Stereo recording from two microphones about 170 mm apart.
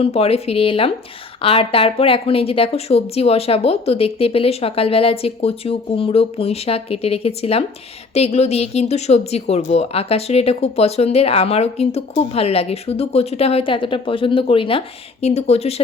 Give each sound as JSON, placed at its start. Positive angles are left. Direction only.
{"t": 0.0, "sound": "speech", "side_deg": 35}